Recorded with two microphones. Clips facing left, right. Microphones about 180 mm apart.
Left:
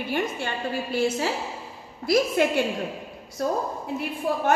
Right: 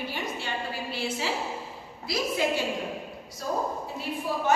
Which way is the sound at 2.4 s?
60° left (ahead or behind).